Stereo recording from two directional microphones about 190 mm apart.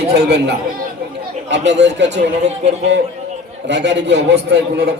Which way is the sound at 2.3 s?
35° right (ahead or behind).